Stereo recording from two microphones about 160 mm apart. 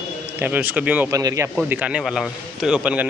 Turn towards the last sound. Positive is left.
turn(degrees=-5)  # may be behind; listen again after turning